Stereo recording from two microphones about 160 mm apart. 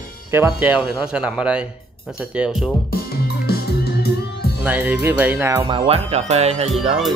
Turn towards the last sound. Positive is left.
turn(degrees=0)  # may be behind; listen again after turning